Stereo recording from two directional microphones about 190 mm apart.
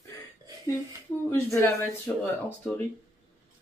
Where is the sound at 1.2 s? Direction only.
10° left (ahead or behind).